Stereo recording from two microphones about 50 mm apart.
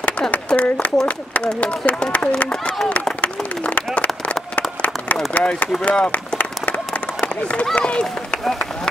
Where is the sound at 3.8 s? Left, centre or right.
Left.